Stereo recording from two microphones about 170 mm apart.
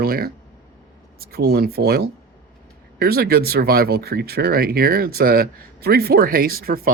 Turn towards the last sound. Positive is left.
turn(degrees=-60)  # may be behind; listen again after turning